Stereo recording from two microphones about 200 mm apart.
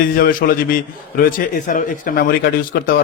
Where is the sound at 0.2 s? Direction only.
45° left (ahead or behind).